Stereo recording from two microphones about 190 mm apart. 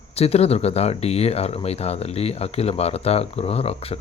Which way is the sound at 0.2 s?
30° left (ahead or behind).